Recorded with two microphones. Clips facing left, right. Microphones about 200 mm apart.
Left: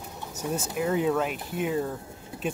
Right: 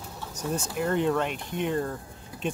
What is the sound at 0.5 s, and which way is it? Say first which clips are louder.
Speech: even; 5° left (ahead or behind).